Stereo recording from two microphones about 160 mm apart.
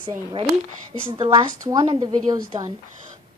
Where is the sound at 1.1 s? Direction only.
25° right (ahead or behind).